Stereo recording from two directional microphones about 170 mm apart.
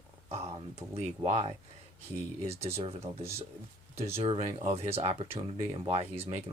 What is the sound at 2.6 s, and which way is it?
Speech, 35° right (ahead or behind).